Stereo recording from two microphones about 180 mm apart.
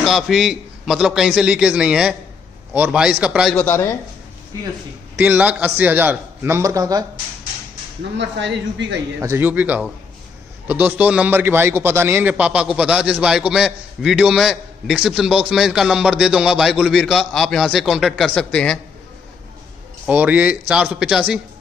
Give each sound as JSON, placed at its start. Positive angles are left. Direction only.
{"t": 0.0, "sound": "a man's voice", "side_deg": 0}
{"t": 3.5, "sound": "speech", "side_deg": 15}
{"t": 5.1, "sound": "a man's voice", "side_deg": -10}
{"t": 8.2, "sound": "a woman's voice", "side_deg": -75}
{"t": 9.2, "sound": "a man's voice", "side_deg": -10}
{"t": 20.1, "sound": "a man's voice", "side_deg": -10}